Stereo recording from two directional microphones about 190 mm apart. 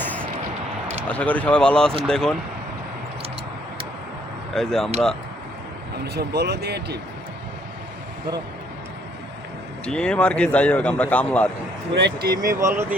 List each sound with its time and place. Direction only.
0.0 s music: 10° left (ahead or behind)
1.0 s speech: 5° left (ahead or behind)
4.5 s speech: centre (ahead or behind)
6.1 s speech: 60° right (ahead or behind)
9.8 s speech: 5° left (ahead or behind)
11.9 s speech: 60° right (ahead or behind)
12.4 s speech: 15° right (ahead or behind)